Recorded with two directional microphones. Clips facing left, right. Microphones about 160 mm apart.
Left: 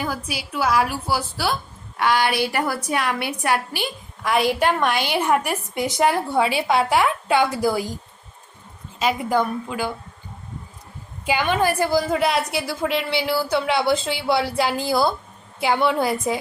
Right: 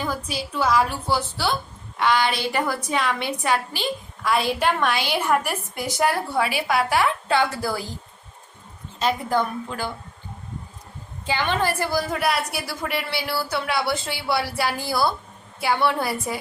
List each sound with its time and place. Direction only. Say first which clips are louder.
0.0 s a woman's voice: even; 10° left (ahead or behind)
4.9 s a woman's voice: left 2 dB; 55° left (ahead or behind)
5.5 s a woman's voice: left 4 dB; 15° left (ahead or behind)
9.0 s a woman's voice: left 2 dB; 10° left (ahead or behind)
11.3 s a woman's voice: left 3 dB; 10° left (ahead or behind)